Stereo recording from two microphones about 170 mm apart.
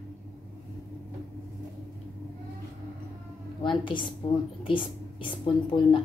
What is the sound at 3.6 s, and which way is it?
A woman's voice, 30° left (ahead or behind).